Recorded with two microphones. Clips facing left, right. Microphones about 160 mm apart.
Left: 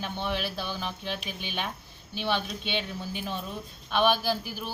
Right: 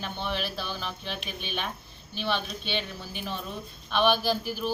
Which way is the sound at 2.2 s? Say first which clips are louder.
Left 1 dB; 10° left (ahead or behind).